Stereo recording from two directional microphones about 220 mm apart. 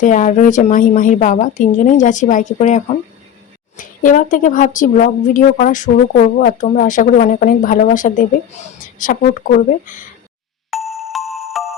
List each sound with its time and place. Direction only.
0.0 s a woman's voice: 35° left (ahead or behind)
10.7 s music: centre (ahead or behind)